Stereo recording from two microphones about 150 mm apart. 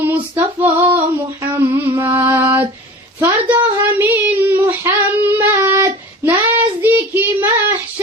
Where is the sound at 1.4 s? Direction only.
15° right (ahead or behind).